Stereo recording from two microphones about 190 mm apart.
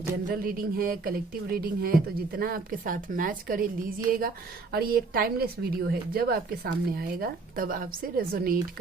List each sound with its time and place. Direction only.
0.3 s speech: 50° right (ahead or behind)